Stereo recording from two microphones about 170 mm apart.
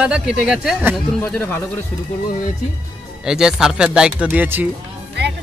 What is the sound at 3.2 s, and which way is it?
Speech, 5° right (ahead or behind).